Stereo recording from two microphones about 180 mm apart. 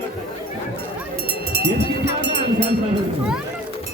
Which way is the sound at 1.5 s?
65° right (ahead or behind).